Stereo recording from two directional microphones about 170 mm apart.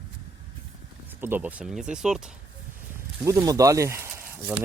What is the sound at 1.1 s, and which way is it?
Speech, 10° right (ahead or behind).